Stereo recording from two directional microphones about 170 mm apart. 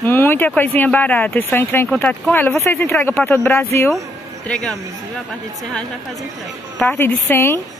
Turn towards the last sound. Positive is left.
turn(degrees=15)  # may be behind; listen again after turning